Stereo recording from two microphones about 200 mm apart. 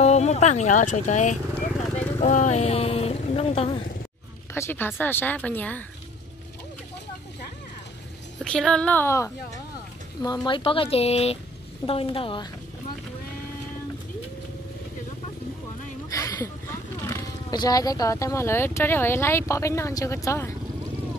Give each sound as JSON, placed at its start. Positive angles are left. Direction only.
{"t": 0.0, "sound": "speech", "side_deg": 35}
{"t": 4.6, "sound": "speech", "side_deg": 10}
{"t": 8.5, "sound": "speech", "side_deg": 5}
{"t": 16.1, "sound": "speech", "side_deg": 15}